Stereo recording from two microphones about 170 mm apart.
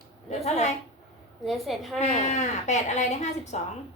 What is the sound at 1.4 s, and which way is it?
Speech, centre (ahead or behind).